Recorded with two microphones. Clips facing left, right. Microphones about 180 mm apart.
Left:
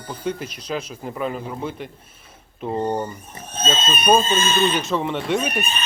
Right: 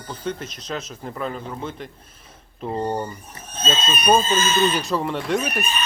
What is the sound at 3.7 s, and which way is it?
Speech, 25° left (ahead or behind).